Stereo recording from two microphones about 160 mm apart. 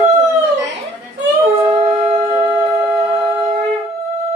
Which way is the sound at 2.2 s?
25° right (ahead or behind).